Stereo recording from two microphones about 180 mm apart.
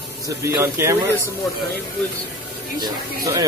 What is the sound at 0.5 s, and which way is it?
Speech, 15° right (ahead or behind).